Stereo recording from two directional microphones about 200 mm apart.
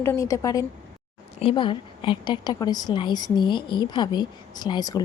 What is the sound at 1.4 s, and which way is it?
A woman's voice, 25° left (ahead or behind).